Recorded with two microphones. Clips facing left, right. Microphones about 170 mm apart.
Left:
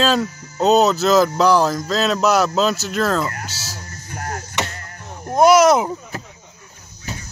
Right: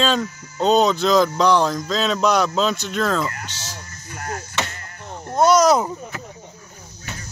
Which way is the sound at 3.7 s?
40° left (ahead or behind).